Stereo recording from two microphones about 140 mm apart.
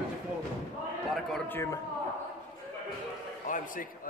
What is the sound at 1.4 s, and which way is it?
Speech, 20° left (ahead or behind).